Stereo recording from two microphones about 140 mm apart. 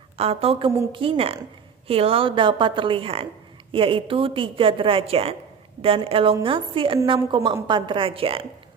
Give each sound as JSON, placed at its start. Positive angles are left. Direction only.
{"t": 0.2, "sound": "a woman's voice", "side_deg": -45}